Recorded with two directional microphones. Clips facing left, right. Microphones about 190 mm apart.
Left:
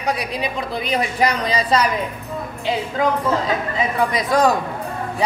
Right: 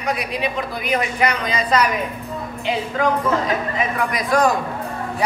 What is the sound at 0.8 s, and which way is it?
A woman's voice, 35° left (ahead or behind).